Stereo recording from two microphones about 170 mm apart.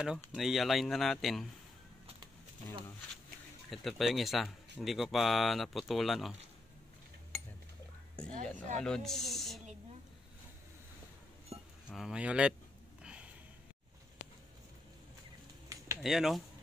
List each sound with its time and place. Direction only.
0.3 s speech: centre (ahead or behind)
3.7 s speech: centre (ahead or behind)
8.2 s speech: 5° left (ahead or behind)
11.5 s a sound: 35° right (ahead or behind)
11.9 s speech: 5° right (ahead or behind)
13.0 s a sound: 5° right (ahead or behind)
16.0 s speech: centre (ahead or behind)